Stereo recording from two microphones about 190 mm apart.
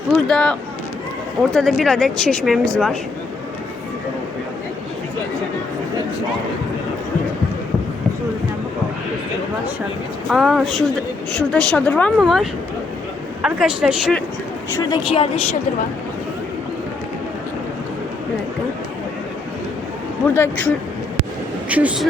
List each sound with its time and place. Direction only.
0.3 s speech: 5° left (ahead or behind)
1.5 s speech: centre (ahead or behind)
10.2 s speech: centre (ahead or behind)
14.8 s speech: 25° left (ahead or behind)
20.3 s speech: 10° left (ahead or behind)
21.7 s speech: 5° right (ahead or behind)